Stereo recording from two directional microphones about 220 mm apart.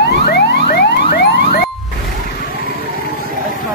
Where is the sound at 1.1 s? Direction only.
45° left (ahead or behind).